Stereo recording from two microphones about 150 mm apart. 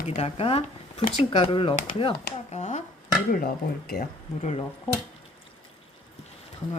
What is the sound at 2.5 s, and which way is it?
Speech, 50° left (ahead or behind).